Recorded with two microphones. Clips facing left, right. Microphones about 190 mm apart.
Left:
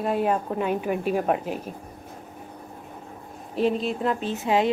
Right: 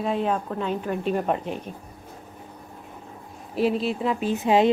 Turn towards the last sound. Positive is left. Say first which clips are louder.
# right 3 dB
turn(degrees=-20)  # may be behind; listen again after turning